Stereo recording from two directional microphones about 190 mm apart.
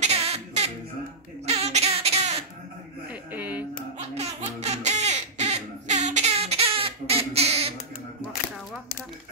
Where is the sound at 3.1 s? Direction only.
10° right (ahead or behind).